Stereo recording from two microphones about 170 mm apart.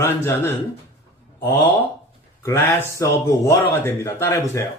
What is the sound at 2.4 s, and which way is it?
A man's voice, 15° left (ahead or behind).